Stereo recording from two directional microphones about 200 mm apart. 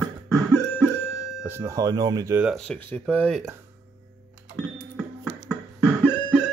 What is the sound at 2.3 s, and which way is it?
Speech, centre (ahead or behind).